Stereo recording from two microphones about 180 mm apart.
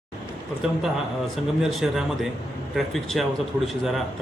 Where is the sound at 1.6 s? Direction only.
Centre (ahead or behind).